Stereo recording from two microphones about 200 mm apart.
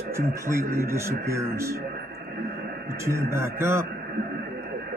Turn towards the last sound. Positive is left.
turn(degrees=-15)  # may be behind; listen again after turning